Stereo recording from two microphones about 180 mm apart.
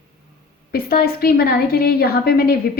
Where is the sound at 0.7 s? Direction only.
55° left (ahead or behind).